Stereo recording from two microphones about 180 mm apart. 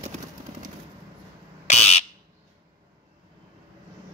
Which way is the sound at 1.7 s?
35° left (ahead or behind).